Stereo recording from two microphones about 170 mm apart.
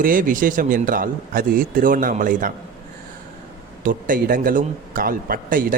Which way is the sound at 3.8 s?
55° right (ahead or behind).